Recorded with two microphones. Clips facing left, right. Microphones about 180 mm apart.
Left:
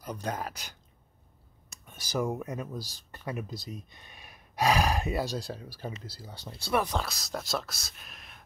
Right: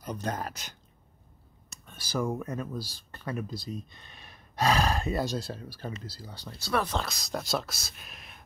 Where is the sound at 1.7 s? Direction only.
15° left (ahead or behind).